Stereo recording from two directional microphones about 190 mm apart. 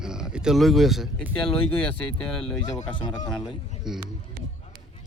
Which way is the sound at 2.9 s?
25° left (ahead or behind).